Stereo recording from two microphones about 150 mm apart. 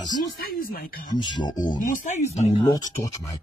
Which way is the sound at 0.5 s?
75° left (ahead or behind).